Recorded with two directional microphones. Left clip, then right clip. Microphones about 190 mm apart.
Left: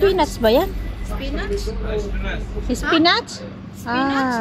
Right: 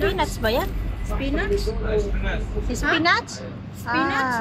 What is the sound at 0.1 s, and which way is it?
Speech, 70° left (ahead or behind).